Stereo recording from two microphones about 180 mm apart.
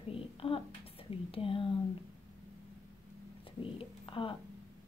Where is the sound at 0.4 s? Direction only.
30° left (ahead or behind).